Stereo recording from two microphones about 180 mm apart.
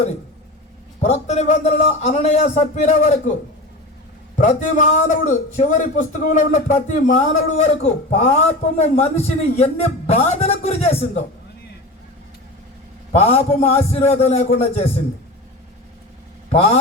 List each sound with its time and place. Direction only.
1.0 s a man's voice: 40° left (ahead or behind)
4.4 s a man's voice: 45° left (ahead or behind)
13.1 s a man's voice: 35° left (ahead or behind)
16.5 s a man's voice: 35° left (ahead or behind)